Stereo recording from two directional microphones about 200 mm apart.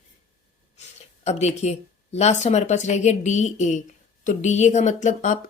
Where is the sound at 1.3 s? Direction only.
35° left (ahead or behind).